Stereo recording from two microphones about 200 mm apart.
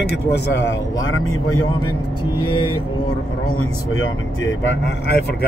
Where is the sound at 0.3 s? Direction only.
70° left (ahead or behind); by 1.9 s 90° left.